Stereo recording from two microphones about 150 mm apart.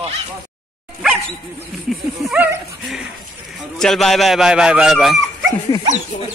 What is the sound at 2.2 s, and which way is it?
Speech, centre (ahead or behind).